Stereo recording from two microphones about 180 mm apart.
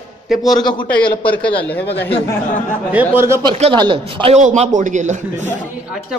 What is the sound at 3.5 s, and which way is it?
A man's voice, 30° right (ahead or behind).